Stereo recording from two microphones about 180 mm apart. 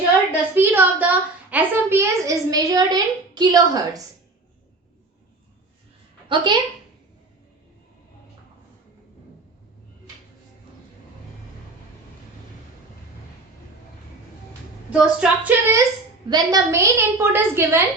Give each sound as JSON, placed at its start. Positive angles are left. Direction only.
{"t": 0.3, "sound": "a sound", "side_deg": -10}
{"t": 6.2, "sound": "a woman's voice", "side_deg": -25}
{"t": 14.8, "sound": "a woman's voice", "side_deg": -10}